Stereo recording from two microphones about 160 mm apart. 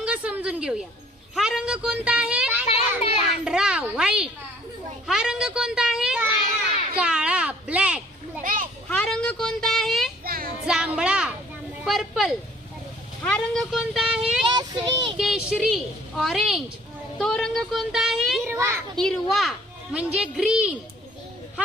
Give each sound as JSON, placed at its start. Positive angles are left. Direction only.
{"t": 0.0, "sound": "a sound", "side_deg": -5}
{"t": 1.4, "sound": "a child's voice", "side_deg": -5}
{"t": 6.9, "sound": "a sound", "side_deg": -5}
{"t": 8.4, "sound": "children playing", "side_deg": -55}
{"t": 8.9, "sound": "a sound", "side_deg": 5}
{"t": 10.2, "sound": "child singing", "side_deg": -65}
{"t": 10.7, "sound": "a sound", "side_deg": -5}
{"t": 11.9, "sound": "a child's voice", "side_deg": 0}
{"t": 14.5, "sound": "a child's voice", "side_deg": -25}
{"t": 15.2, "sound": "a child's voice", "side_deg": -5}
{"t": 18.4, "sound": "a child's voice", "side_deg": -15}
{"t": 18.9, "sound": "a child's voice", "side_deg": 0}